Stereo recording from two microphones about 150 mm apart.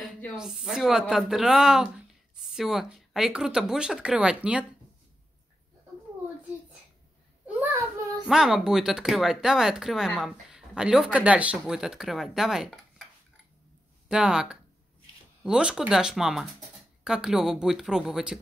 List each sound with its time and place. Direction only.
0.0 s speech: centre (ahead or behind)
7.6 s child singing: 20° right (ahead or behind)
8.3 s speech: 5° right (ahead or behind)
14.0 s speech: 5° right (ahead or behind)